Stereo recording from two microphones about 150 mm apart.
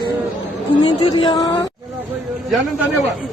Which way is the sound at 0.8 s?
35° left (ahead or behind).